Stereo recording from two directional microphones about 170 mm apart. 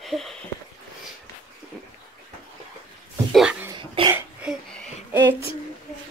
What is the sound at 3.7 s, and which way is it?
Cough, 30° right (ahead or behind).